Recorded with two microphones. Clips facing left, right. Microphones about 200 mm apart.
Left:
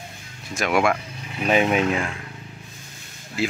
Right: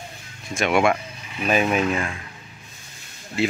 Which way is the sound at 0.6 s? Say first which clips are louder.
Right 1 dB; centre (ahead or behind).